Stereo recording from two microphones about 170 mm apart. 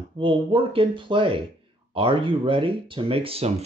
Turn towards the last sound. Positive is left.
turn(degrees=-35)  # may be behind; listen again after turning